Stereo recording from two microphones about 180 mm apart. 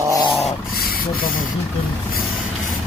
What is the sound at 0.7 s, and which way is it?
Speech, 55° left (ahead or behind).